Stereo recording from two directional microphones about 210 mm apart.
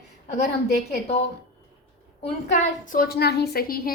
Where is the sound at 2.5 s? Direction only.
40° left (ahead or behind).